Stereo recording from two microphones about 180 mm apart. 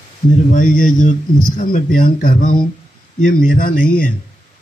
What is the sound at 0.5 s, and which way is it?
A man's voice, 45° left (ahead or behind).